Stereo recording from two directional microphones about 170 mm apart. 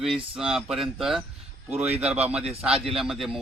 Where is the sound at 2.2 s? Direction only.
5° right (ahead or behind).